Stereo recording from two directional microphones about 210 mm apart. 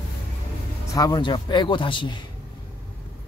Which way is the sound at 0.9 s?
15° left (ahead or behind).